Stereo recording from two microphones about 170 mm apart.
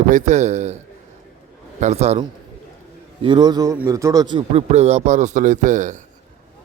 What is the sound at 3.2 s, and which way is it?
A man's voice, 25° right (ahead or behind).